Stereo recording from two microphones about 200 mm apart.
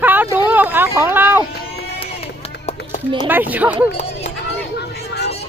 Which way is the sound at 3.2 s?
10° right (ahead or behind).